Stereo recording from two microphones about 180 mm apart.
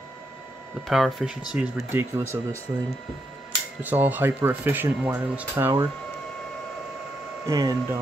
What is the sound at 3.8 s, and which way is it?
Speech, 10° right (ahead or behind).